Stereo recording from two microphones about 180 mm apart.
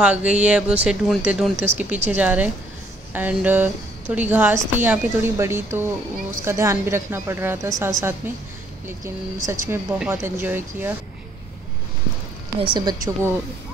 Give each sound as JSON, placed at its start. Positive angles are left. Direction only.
{"t": 0.0, "sound": "a woman's voice", "side_deg": -5}
{"t": 9.0, "sound": "a woman's voice", "side_deg": -15}
{"t": 12.5, "sound": "a woman's voice", "side_deg": -25}